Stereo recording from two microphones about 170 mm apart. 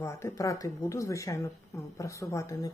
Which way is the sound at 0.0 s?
20° left (ahead or behind).